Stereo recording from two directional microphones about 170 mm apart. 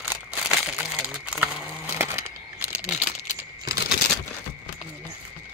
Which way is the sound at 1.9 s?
15° right (ahead or behind).